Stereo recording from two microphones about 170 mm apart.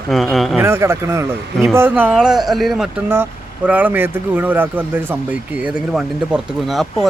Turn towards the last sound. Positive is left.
turn(degrees=0)  # may be behind; listen again after turning